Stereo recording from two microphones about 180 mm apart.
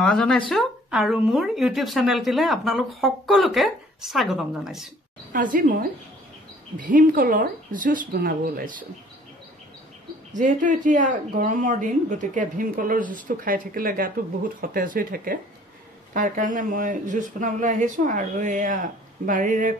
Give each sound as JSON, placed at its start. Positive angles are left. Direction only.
{"t": 0.0, "sound": "a woman's voice", "side_deg": 5}
{"t": 5.3, "sound": "speech", "side_deg": -45}
{"t": 10.3, "sound": "speech", "side_deg": -45}